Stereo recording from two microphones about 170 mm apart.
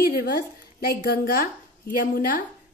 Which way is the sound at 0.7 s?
65° left (ahead or behind).